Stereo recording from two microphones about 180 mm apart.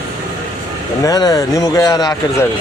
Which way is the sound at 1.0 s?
20° left (ahead or behind).